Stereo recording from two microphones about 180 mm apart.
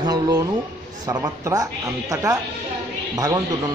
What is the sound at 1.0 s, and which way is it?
A man's voice, 20° right (ahead or behind).